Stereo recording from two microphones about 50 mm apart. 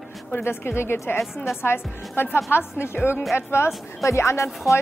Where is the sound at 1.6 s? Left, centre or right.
Left.